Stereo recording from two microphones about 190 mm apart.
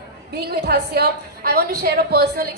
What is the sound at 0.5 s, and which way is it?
A woman's voice, 55° right (ahead or behind).